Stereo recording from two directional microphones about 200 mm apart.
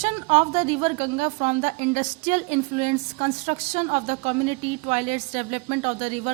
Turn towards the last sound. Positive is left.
turn(degrees=-35)  # may be behind; listen again after turning